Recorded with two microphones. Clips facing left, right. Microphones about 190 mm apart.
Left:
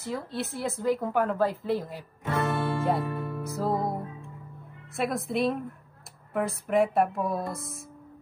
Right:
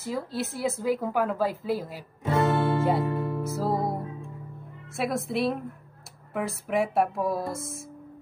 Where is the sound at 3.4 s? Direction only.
Centre (ahead or behind).